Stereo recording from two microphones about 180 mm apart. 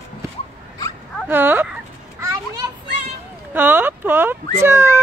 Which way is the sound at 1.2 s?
10° right (ahead or behind).